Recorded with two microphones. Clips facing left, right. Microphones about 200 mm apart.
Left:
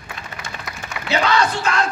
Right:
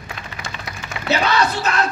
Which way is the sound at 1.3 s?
20° right (ahead or behind).